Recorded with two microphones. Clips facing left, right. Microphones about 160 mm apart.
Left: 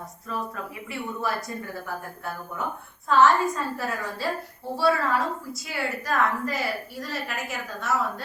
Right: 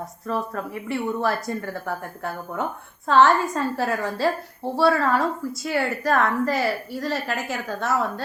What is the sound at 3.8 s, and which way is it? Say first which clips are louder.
A woman's voice: right 7 dB; 65° right (ahead or behind).